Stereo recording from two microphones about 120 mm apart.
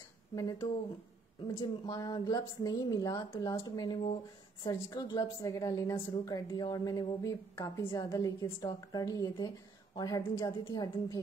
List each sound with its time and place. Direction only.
0.4 s a woman's voice: 30° left (ahead or behind)